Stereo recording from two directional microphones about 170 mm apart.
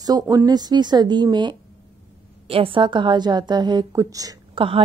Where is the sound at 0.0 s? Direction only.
20° right (ahead or behind).